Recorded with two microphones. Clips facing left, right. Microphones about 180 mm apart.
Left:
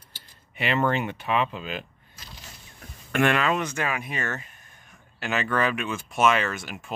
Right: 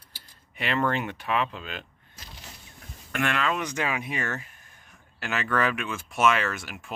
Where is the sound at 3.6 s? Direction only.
15° right (ahead or behind).